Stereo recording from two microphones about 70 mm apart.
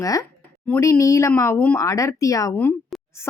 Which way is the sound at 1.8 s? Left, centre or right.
Left.